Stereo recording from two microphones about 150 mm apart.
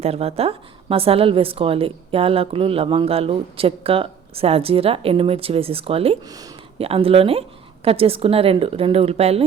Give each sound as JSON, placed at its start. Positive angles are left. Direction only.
{"t": 0.0, "sound": "a woman's voice", "side_deg": -40}